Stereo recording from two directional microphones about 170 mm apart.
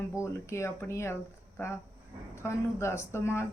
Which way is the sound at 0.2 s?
15° left (ahead or behind).